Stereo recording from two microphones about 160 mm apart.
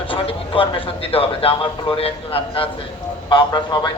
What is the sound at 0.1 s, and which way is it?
Speech, 35° left (ahead or behind).